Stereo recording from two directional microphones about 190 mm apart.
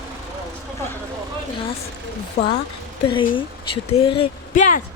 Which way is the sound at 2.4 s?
35° left (ahead or behind).